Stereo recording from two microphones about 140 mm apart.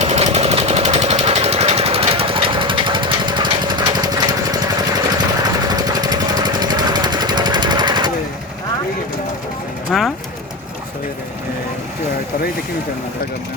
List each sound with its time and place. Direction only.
0.0 s vehicle: 50° right (ahead or behind); by 5.2 s 25° right (ahead or behind)
5.6 s jackhammer: 30° right (ahead or behind)
9.9 s bird: centre (ahead or behind)